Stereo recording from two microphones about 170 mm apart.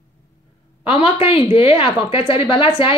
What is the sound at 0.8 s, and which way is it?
A woman's voice, 35° left (ahead or behind).